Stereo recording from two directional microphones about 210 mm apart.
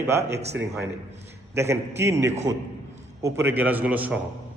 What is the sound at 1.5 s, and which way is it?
A man's voice, 10° right (ahead or behind).